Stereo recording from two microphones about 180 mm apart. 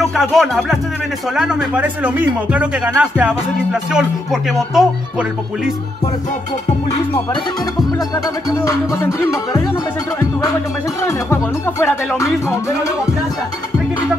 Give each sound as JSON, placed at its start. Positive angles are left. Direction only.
{"t": 0.0, "sound": "speech", "side_deg": 0}
{"t": 8.5, "sound": "music", "side_deg": 15}